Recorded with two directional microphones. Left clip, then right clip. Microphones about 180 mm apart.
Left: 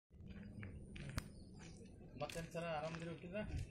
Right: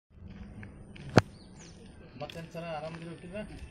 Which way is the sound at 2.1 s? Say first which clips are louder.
Right 5 dB; 5° left (ahead or behind).